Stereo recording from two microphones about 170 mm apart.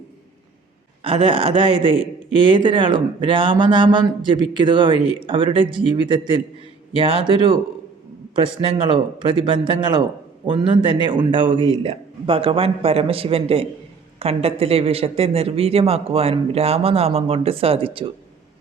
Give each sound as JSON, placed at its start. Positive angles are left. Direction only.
{"t": 1.0, "sound": "a man's voice", "side_deg": -30}